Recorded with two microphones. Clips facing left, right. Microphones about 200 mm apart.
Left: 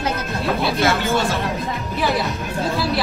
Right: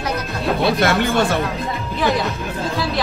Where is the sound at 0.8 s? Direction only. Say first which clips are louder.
Right 2 dB; 55° right (ahead or behind).